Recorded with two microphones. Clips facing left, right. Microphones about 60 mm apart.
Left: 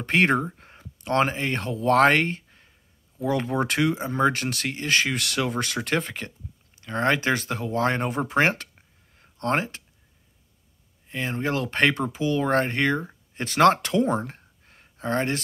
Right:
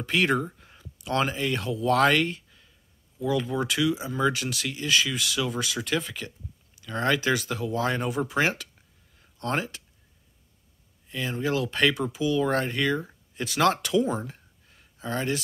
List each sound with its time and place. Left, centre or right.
0.0 s speech: left
3.2 s speech: left
11.1 s speech: left